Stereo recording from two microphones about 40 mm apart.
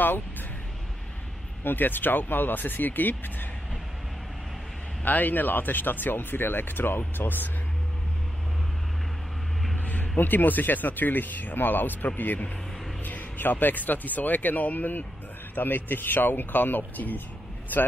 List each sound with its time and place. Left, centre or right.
0.0 s speech: left
1.6 s speech: left
5.0 s speech: left
9.8 s speech: left